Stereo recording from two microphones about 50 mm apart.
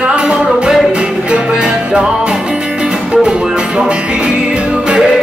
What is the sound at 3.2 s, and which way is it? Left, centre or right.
Music, centre.